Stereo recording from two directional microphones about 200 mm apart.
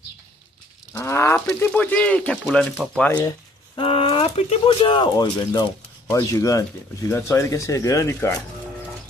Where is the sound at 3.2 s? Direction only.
20° left (ahead or behind).